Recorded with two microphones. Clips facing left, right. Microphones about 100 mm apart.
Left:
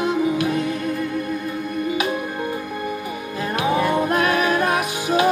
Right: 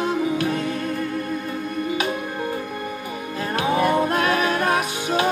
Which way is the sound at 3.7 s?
30° right (ahead or behind).